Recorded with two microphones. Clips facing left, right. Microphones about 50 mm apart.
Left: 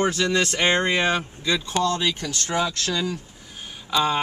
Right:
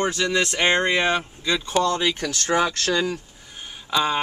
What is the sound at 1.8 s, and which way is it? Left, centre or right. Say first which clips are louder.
Speech: right 1 dB; right.